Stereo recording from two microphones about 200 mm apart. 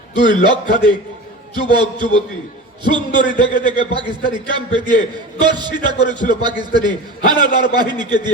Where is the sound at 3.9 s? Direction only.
25° right (ahead or behind).